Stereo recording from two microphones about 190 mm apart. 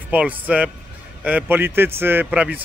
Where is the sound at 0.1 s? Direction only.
5° right (ahead or behind).